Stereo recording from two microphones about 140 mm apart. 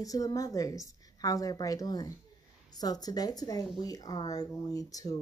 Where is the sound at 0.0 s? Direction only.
25° left (ahead or behind).